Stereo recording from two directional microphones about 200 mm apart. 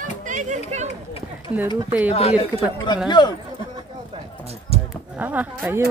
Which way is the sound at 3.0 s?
20° left (ahead or behind).